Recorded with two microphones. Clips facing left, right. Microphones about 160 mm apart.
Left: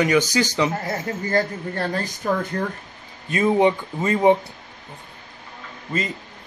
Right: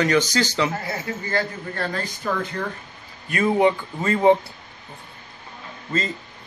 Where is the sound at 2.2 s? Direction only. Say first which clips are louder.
Left 3 dB; 40° left (ahead or behind).